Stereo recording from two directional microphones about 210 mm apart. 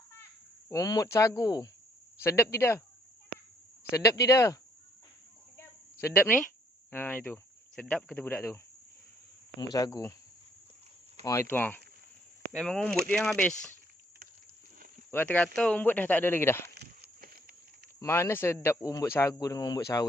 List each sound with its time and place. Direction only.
0.7 s a man's voice: 15° left (ahead or behind)
3.9 s a man's voice: 15° left (ahead or behind)
5.5 s cricket: 10° left (ahead or behind)
6.9 s a man's voice: 10° left (ahead or behind)
9.7 s a man's voice: 15° left (ahead or behind)
11.2 s a man's voice: 15° left (ahead or behind)
15.1 s a man's voice: 10° left (ahead or behind)
16.6 s a sound: 50° right (ahead or behind)
18.0 s a man's voice: 10° left (ahead or behind)